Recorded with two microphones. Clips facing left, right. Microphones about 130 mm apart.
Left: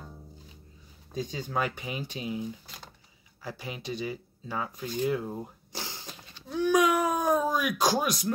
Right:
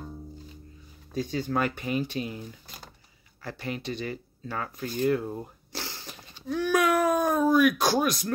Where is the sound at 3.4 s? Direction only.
10° left (ahead or behind).